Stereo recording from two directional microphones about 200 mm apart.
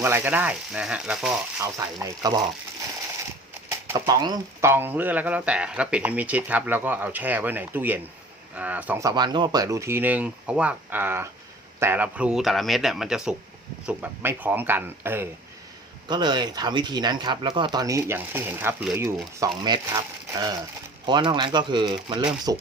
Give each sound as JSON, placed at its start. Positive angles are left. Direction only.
{"t": 0.0, "sound": "speech", "side_deg": -10}
{"t": 1.6, "sound": "speech", "side_deg": -15}
{"t": 3.7, "sound": "speech", "side_deg": -15}
{"t": 16.0, "sound": "speech", "side_deg": -20}